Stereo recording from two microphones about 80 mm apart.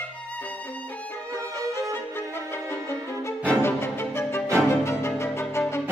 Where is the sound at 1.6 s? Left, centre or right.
Right.